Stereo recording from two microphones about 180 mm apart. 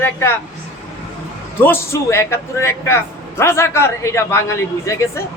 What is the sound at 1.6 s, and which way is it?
A man's voice, 15° left (ahead or behind).